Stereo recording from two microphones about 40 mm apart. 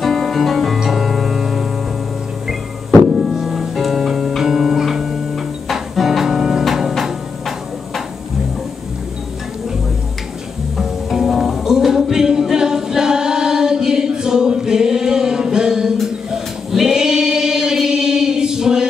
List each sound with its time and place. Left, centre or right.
0.0 s music: centre
3.1 s music: centre
10.8 s music: centre
16.3 s choir: centre